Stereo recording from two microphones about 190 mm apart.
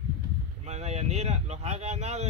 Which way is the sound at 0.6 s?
35° right (ahead or behind).